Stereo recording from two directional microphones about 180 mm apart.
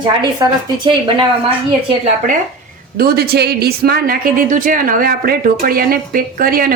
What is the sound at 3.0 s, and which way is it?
Speech, 60° right (ahead or behind).